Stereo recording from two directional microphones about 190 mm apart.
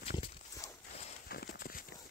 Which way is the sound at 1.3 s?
50° left (ahead or behind).